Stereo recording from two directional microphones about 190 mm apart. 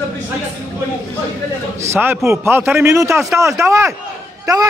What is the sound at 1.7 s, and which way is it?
A man's voice, 15° right (ahead or behind).